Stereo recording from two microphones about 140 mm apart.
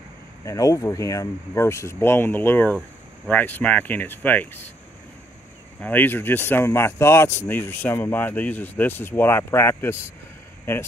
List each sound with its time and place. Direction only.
0.5 s speech: 25° left (ahead or behind)
5.8 s speech: 15° left (ahead or behind)